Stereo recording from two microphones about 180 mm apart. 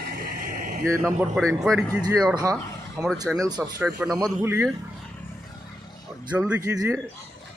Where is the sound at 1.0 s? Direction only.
5° left (ahead or behind).